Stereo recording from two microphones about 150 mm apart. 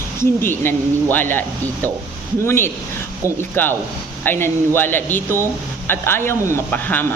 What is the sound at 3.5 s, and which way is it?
Speech, 15° left (ahead or behind).